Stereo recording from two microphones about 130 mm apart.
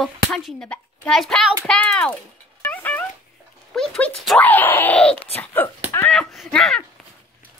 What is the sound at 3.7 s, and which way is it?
Speech, 5° left (ahead or behind).